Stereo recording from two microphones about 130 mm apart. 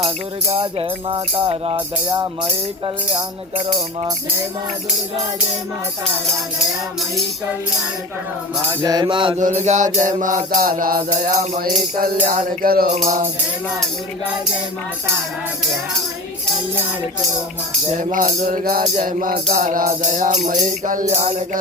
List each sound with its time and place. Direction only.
0.5 s music: 45° right (ahead or behind)
3.7 s music: 30° right (ahead or behind)
8.8 s music: 30° right (ahead or behind)
9.4 s music: 70° right (ahead or behind)
12.2 s music: 90° right
17.9 s music: 90° right
20.7 s music: 90° right
21.1 s music: 60° right (ahead or behind)